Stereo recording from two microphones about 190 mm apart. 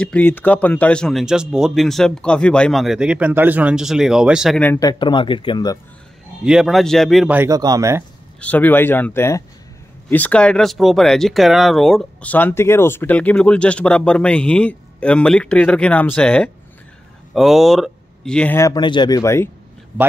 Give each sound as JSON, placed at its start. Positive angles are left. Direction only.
{"t": 0.0, "sound": "speech", "side_deg": 10}
{"t": 4.7, "sound": "speech", "side_deg": 20}
{"t": 6.4, "sound": "speech", "side_deg": 0}
{"t": 7.3, "sound": "speech", "side_deg": -15}
{"t": 8.4, "sound": "speech", "side_deg": 10}